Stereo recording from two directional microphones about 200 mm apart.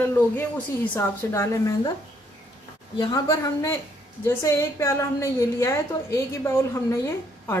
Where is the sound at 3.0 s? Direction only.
15° left (ahead or behind).